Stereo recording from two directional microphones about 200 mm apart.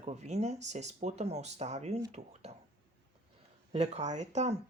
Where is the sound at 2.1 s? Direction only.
35° right (ahead or behind).